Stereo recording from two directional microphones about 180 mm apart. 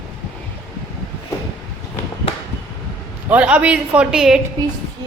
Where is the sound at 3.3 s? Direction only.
10° right (ahead or behind).